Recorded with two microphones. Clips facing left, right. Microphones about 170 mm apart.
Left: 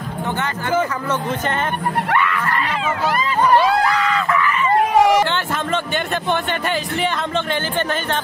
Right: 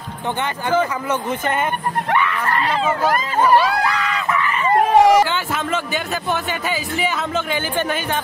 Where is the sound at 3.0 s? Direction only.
45° right (ahead or behind).